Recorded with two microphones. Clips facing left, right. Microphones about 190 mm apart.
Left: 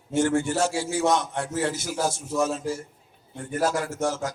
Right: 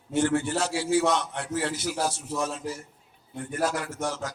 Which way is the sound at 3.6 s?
45° left (ahead or behind).